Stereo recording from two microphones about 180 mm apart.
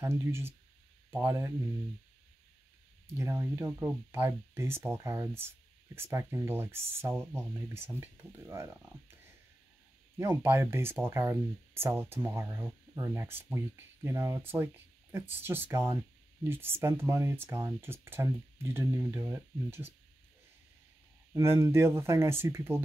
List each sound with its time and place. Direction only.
0.0 s speech: 15° right (ahead or behind)
3.2 s speech: 15° right (ahead or behind)
10.1 s speech: 15° right (ahead or behind)
21.3 s speech: 15° right (ahead or behind)